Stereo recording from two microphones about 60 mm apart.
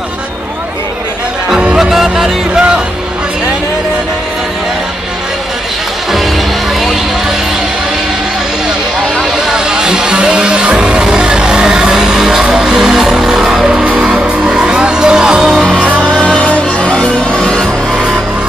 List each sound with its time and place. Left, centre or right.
1.8 s music: centre
9.2 s music: centre
15.8 s music: right
16.1 s music: centre